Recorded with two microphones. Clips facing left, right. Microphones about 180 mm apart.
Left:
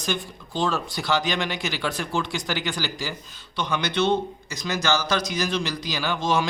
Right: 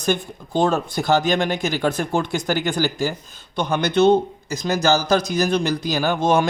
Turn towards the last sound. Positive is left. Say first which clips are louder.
# right 6 dB
turn(degrees=-50)  # may be behind; listen again after turning